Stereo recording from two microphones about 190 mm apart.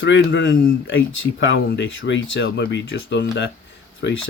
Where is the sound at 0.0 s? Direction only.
75° left (ahead or behind).